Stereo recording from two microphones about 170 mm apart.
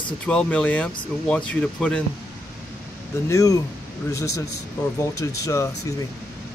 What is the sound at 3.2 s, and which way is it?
Speech, 20° left (ahead or behind).